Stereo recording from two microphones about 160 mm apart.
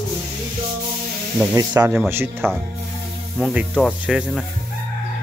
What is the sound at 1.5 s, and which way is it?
Speech, 20° right (ahead or behind).